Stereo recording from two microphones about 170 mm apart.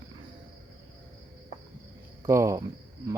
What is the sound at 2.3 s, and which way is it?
Speech, 15° right (ahead or behind).